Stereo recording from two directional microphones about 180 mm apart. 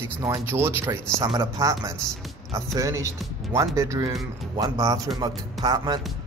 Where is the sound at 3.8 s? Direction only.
15° right (ahead or behind).